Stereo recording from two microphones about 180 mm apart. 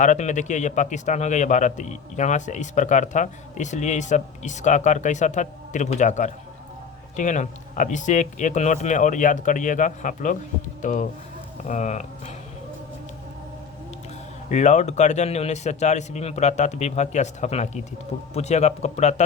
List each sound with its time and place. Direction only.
0.0 s a man's voice: 40° left (ahead or behind)
14.5 s a man's voice: 40° left (ahead or behind)